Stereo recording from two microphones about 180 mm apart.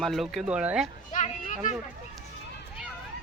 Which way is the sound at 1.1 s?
45° left (ahead or behind).